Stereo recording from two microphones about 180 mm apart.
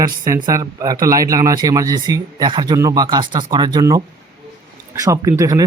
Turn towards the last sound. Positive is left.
turn(degrees=-20)  # may be behind; listen again after turning